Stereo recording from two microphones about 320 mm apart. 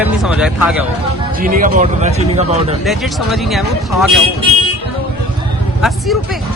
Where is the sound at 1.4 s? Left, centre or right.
Right.